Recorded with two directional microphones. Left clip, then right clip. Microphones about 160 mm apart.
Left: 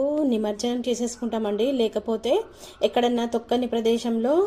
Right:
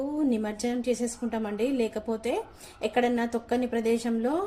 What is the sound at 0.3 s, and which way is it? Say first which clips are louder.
A woman's voice: left 4 dB; 25° left (ahead or behind).